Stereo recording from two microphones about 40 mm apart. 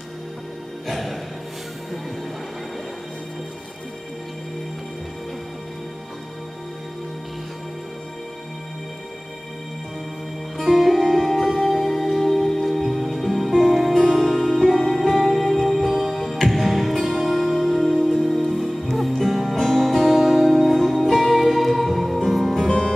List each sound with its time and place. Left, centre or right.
0.8 s music: centre
10.6 s music: centre
20.2 s music: centre
20.5 s music: centre
22.7 s music: centre